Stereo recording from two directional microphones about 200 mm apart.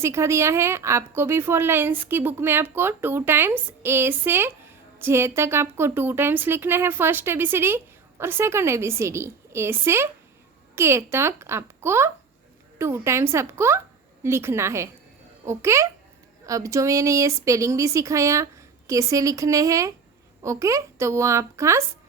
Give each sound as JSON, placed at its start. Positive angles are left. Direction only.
{"t": 0.0, "sound": "a woman's voice", "side_deg": -15}